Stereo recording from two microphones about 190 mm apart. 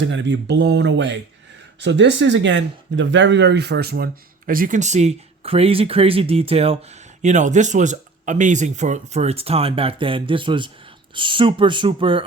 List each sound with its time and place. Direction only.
0.0 s speech: 70° right (ahead or behind); by 12.2 s 25° right (ahead or behind)